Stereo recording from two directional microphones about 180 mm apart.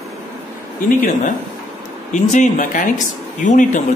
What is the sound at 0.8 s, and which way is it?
Speech, 55° left (ahead or behind).